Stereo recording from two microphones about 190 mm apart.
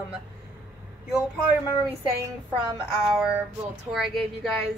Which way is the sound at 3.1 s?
5° right (ahead or behind).